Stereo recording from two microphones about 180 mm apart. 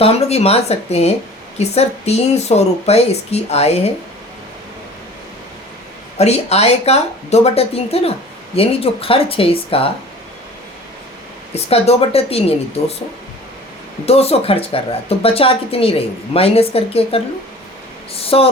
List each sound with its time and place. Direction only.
0.0 s speech: 35° left (ahead or behind)
6.1 s speech: 35° left (ahead or behind)
11.5 s speech: 35° left (ahead or behind)
14.0 s speech: 35° left (ahead or behind)
18.2 s a sound: 30° left (ahead or behind)